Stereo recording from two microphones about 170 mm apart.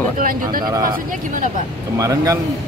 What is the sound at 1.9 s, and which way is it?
Speech, 20° right (ahead or behind).